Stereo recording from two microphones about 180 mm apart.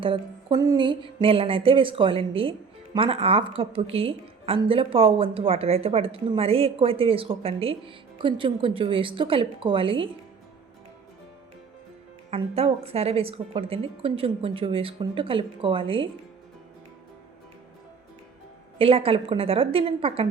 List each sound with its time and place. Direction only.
0.0 s a woman's voice: 25° right (ahead or behind)
12.3 s a woman's voice: 35° right (ahead or behind)
18.8 s a woman's voice: 30° right (ahead or behind)